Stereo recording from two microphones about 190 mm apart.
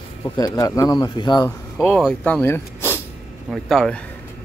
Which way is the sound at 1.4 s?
10° left (ahead or behind).